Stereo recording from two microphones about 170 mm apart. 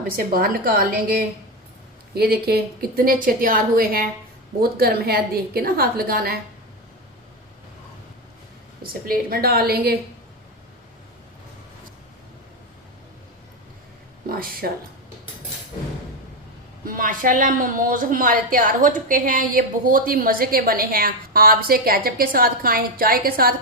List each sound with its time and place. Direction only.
0.2 s a woman's voice: 55° right (ahead or behind)
8.8 s a woman's voice: 60° right (ahead or behind)
14.3 s speech: 60° right (ahead or behind)
16.8 s a woman's voice: 55° right (ahead or behind)